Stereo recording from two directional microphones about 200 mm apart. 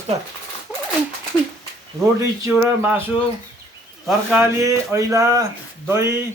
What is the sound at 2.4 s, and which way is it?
Speech, 10° right (ahead or behind).